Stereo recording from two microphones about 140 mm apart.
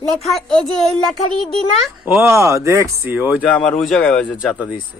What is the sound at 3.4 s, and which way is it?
Speech, 10° left (ahead or behind).